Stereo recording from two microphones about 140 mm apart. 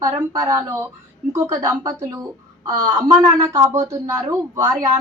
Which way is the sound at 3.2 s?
25° right (ahead or behind).